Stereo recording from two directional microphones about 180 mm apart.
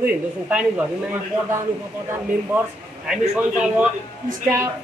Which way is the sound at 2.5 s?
15° right (ahead or behind).